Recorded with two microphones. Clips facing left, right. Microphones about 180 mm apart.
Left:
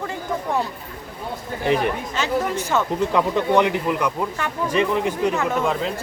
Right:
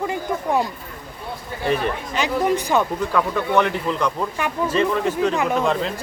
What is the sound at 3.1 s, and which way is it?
Speech, 20° left (ahead or behind).